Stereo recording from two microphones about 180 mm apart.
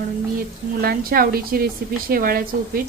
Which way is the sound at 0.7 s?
55° right (ahead or behind).